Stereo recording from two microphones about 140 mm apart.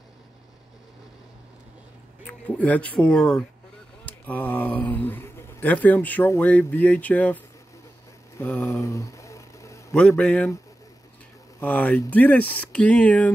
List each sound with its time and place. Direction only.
2.2 s speech: 10° left (ahead or behind)
8.4 s a sound: 20° left (ahead or behind)
9.9 s speech: 5° left (ahead or behind)
11.6 s speech: 10° left (ahead or behind)